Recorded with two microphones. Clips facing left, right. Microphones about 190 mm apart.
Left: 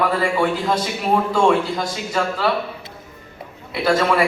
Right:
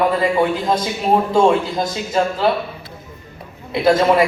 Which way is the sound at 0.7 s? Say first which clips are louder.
Right 2 dB; 25° right (ahead or behind).